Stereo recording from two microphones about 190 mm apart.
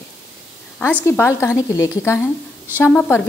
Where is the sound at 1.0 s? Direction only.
10° left (ahead or behind).